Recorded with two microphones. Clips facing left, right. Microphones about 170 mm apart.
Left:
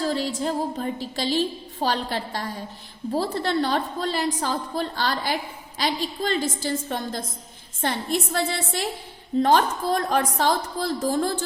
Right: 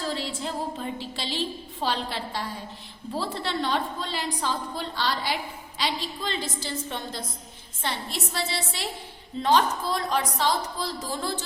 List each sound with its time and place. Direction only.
0.0 s a woman's voice: 45° left (ahead or behind)